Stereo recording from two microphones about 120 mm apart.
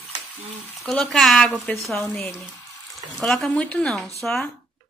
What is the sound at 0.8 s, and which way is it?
A woman's voice, centre (ahead or behind).